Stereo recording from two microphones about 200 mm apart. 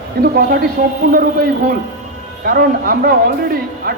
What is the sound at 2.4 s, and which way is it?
A man's voice, 45° right (ahead or behind).